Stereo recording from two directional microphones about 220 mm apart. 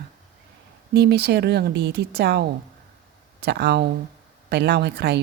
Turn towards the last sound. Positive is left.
turn(degrees=-50)  # may be behind; listen again after turning